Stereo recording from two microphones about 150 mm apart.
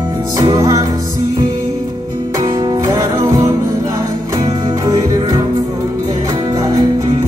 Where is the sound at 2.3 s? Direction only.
25° right (ahead or behind).